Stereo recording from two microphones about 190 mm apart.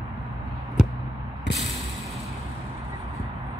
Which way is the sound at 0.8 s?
5° right (ahead or behind).